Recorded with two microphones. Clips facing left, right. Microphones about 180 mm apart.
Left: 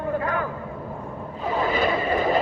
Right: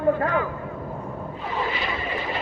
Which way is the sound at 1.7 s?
45° left (ahead or behind).